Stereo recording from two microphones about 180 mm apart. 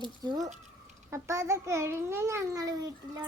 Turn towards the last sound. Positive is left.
turn(degrees=-20)  # may be behind; listen again after turning